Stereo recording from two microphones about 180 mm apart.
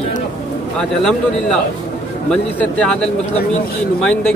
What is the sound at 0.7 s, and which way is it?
Speech, centre (ahead or behind).